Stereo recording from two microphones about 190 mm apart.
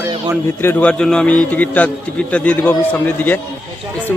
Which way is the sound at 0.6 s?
10° left (ahead or behind).